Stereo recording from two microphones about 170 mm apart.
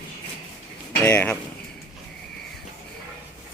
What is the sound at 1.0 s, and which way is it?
Speech, 10° left (ahead or behind).